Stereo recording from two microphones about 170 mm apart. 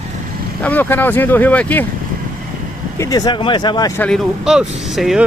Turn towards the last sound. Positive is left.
turn(degrees=0)  # may be behind; listen again after turning